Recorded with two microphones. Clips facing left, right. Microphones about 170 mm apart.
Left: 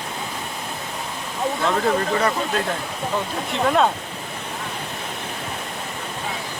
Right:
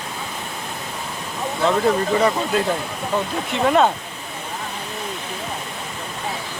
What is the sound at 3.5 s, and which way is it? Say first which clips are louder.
Speech: right 2 dB; centre (ahead or behind).